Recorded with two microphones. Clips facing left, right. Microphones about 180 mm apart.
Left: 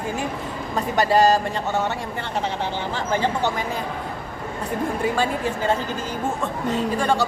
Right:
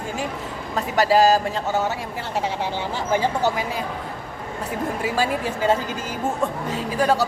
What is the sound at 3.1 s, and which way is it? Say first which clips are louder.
Speech: right 2 dB; 10° right (ahead or behind).